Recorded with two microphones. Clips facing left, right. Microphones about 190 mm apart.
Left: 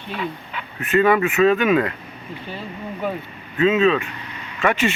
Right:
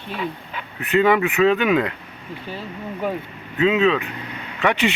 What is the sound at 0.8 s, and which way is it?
Speech, 15° right (ahead or behind).